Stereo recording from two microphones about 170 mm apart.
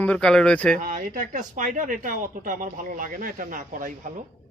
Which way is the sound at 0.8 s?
50° right (ahead or behind).